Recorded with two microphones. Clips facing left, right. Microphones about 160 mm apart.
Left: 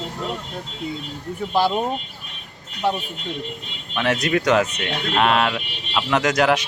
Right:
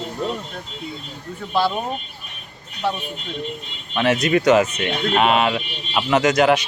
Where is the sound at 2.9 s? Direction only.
15° left (ahead or behind).